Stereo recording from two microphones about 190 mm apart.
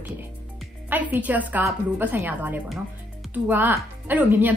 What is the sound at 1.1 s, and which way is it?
A woman's voice, 10° right (ahead or behind).